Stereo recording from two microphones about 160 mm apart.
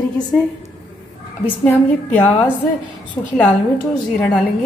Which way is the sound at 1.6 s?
10° left (ahead or behind).